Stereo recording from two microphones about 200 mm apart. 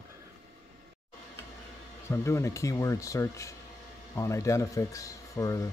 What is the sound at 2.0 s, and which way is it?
Speech, 15° left (ahead or behind).